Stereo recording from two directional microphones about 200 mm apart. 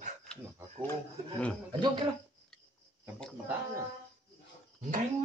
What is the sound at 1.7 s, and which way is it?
Speech, 25° right (ahead or behind).